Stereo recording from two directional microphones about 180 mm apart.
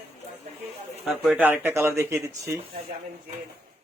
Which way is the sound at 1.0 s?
5° right (ahead or behind).